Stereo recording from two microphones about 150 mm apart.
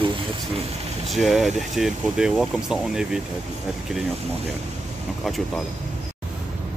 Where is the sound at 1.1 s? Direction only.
Centre (ahead or behind).